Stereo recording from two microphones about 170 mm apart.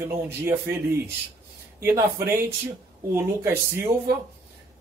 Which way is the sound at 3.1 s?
15° right (ahead or behind).